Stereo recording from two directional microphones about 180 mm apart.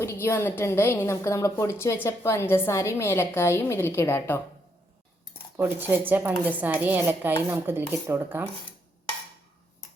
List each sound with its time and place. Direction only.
0.0 s a woman's voice: 15° left (ahead or behind)
5.5 s speech: 10° right (ahead or behind)